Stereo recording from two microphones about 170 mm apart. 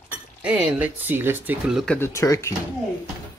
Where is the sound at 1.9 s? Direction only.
15° left (ahead or behind).